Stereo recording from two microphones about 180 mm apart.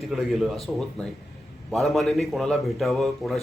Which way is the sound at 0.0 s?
Centre (ahead or behind).